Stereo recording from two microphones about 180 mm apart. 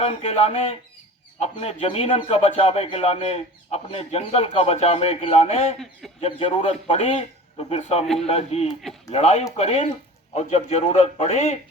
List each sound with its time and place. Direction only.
0.0 s speech: 35° left (ahead or behind)
8.0 s a man's voice: centre (ahead or behind)
8.3 s speech: 35° left (ahead or behind)